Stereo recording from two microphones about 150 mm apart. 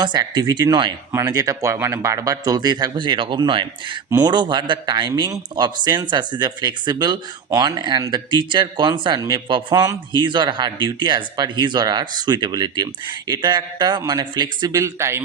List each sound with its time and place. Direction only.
0.0 s a man's voice: 30° right (ahead or behind)